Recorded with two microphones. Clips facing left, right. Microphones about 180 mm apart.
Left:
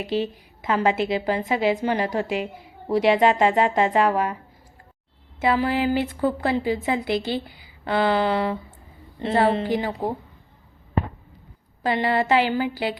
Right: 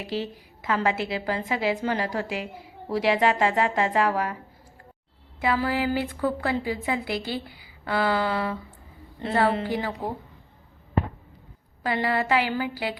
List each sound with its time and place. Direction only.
0.0 s a woman's voice: 20° left (ahead or behind)
5.4 s a woman's voice: 25° left (ahead or behind)
11.8 s a woman's voice: 25° left (ahead or behind)